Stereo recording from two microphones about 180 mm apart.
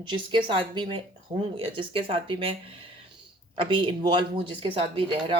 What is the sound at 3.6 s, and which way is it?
Speech, 25° right (ahead or behind).